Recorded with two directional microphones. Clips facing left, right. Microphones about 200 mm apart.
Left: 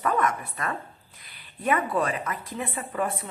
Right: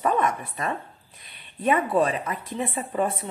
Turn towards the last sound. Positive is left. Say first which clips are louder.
# right 3 dB
turn(degrees=-25)  # may be behind; listen again after turning